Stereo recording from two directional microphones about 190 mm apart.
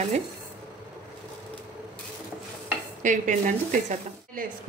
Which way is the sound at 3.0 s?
40° right (ahead or behind).